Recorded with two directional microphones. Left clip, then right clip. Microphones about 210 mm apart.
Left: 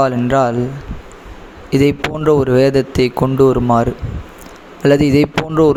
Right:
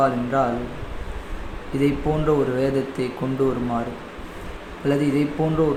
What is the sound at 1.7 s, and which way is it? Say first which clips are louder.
Speech: left 7 dB; 45° left (ahead or behind).